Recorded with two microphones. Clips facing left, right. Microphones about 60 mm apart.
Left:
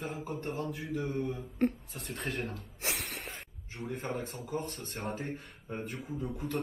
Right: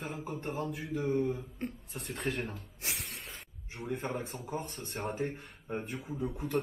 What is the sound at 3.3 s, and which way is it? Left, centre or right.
Spray, centre.